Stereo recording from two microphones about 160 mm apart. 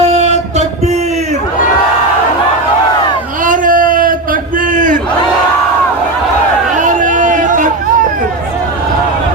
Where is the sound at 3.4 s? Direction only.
55° right (ahead or behind).